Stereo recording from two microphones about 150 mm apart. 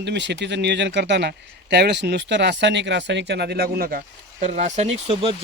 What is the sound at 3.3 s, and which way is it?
Speech, 90° right.